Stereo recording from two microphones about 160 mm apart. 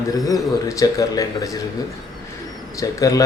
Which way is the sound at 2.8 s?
20° left (ahead or behind).